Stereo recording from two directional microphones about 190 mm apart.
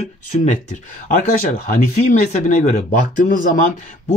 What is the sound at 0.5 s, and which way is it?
Speech, 40° left (ahead or behind).